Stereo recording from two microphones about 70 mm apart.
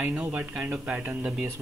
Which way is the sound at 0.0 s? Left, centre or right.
Right.